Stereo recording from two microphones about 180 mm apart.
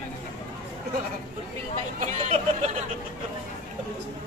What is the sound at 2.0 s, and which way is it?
Speech, 40° right (ahead or behind).